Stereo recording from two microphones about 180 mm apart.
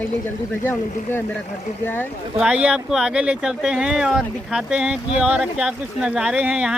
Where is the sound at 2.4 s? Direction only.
5° right (ahead or behind).